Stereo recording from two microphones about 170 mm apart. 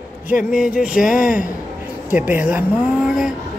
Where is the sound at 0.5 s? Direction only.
5° right (ahead or behind).